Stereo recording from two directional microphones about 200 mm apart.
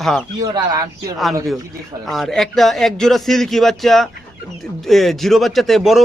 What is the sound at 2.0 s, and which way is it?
A man's voice, centre (ahead or behind).